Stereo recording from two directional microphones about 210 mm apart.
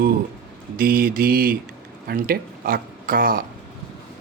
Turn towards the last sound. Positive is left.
turn(degrees=-45)  # may be behind; listen again after turning